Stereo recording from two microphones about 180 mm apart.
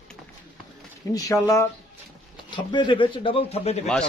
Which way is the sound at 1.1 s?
15° left (ahead or behind).